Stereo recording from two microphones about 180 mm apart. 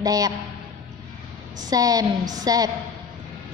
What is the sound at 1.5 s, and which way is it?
A woman's voice, 20° right (ahead or behind).